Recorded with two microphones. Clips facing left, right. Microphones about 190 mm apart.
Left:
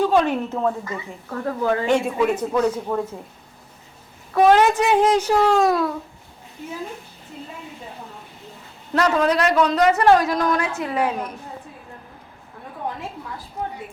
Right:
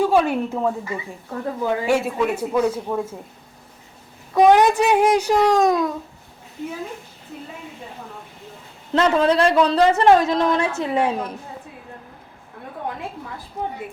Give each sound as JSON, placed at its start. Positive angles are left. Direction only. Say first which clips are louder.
{"t": 0.0, "sound": "speech", "louder": "right 1 dB", "side_deg": -10}
{"t": 4.4, "sound": "speech", "louder": "right 1 dB", "side_deg": -15}
{"t": 8.9, "sound": "speech", "louder": "right 2 dB", "side_deg": -30}